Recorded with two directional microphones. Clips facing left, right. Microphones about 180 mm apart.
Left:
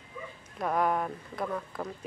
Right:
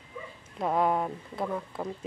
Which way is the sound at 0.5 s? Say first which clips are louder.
Right 2 dB; 25° right (ahead or behind).